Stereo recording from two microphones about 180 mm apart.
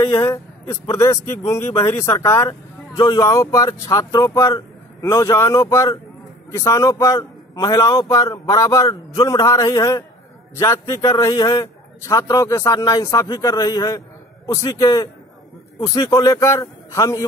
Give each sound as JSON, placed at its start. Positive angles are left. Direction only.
{"t": 0.0, "sound": "a man's voice", "side_deg": 20}